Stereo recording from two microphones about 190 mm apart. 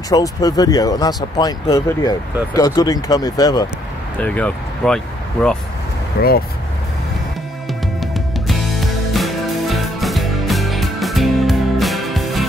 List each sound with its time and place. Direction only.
0.1 s speech: 20° left (ahead or behind)
4.2 s speech: 5° left (ahead or behind)
6.2 s speech: 55° left (ahead or behind)
9.1 s music: centre (ahead or behind)